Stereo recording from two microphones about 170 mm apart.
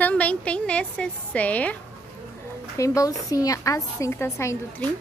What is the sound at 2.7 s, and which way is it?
A woman's voice, 20° left (ahead or behind).